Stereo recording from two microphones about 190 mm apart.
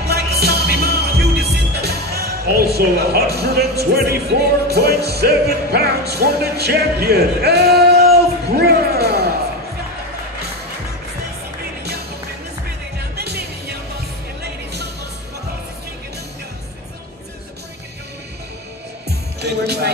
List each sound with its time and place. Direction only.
0.0 s music: 60° right (ahead or behind)
13.1 s music: 60° right (ahead or behind)
19.0 s music: 60° right (ahead or behind)